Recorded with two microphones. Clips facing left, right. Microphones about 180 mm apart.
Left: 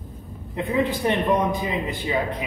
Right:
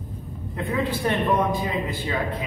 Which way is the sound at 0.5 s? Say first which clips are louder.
Left 3 dB; 20° left (ahead or behind).